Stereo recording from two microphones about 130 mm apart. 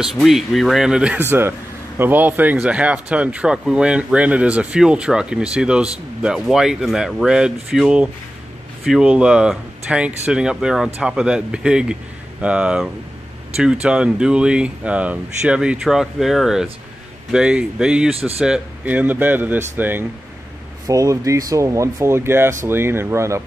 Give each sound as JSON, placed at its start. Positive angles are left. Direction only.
{"t": 0.0, "sound": "speech", "side_deg": 0}
{"t": 20.8, "sound": "speech", "side_deg": -25}